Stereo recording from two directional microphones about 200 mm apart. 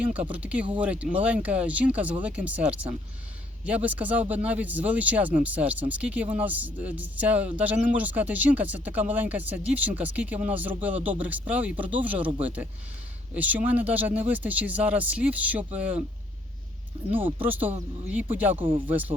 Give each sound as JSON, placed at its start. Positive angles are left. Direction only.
{"t": 0.0, "sound": "speech", "side_deg": -5}
{"t": 17.1, "sound": "speech", "side_deg": -10}
{"t": 18.5, "sound": "speech", "side_deg": -25}
{"t": 18.9, "sound": "speech", "side_deg": -10}